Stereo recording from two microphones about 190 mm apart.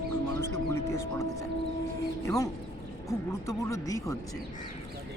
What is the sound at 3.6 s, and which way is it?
Speech, 15° left (ahead or behind).